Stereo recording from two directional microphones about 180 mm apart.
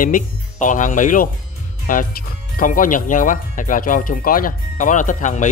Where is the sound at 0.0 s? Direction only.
45° left (ahead or behind).